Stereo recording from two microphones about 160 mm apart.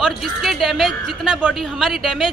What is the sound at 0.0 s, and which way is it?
A woman's voice, centre (ahead or behind).